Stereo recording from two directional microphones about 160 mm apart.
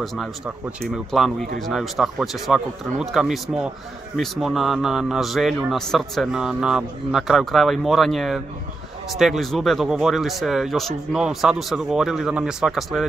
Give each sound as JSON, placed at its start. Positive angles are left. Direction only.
{"t": 0.0, "sound": "a man's voice", "side_deg": 0}